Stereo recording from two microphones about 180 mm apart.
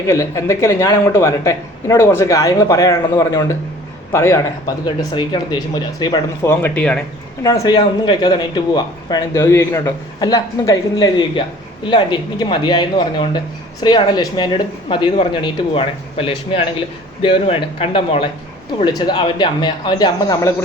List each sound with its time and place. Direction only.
0.1 s a man's voice: 15° left (ahead or behind)
7.4 s speech: 20° left (ahead or behind)